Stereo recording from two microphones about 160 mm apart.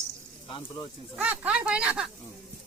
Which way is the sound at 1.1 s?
10° right (ahead or behind).